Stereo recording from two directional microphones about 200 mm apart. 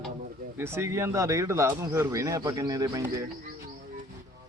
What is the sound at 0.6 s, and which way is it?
Speech, 10° right (ahead or behind).